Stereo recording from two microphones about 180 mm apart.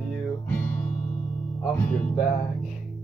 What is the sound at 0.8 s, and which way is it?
Music, 40° left (ahead or behind).